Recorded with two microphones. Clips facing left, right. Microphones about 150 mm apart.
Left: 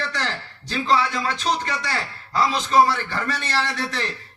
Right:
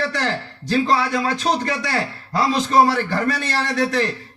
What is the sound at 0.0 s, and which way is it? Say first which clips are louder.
A man's voice: right 5 dB; 45° right (ahead or behind).